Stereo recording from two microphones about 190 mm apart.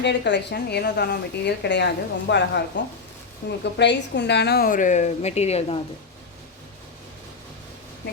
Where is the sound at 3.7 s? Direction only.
65° left (ahead or behind); by 5.8 s 35° left (ahead or behind).